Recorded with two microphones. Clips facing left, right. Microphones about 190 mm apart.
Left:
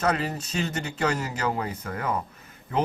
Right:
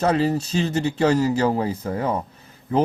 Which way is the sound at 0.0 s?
30° right (ahead or behind).